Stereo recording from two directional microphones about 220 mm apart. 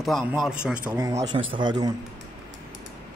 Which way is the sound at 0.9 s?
15° right (ahead or behind).